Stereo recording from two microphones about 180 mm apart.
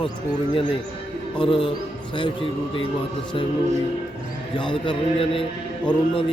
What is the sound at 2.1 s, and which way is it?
Speech, 30° left (ahead or behind).